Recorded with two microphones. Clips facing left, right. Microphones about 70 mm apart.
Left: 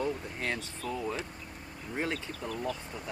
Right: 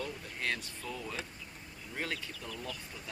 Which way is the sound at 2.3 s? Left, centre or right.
Left.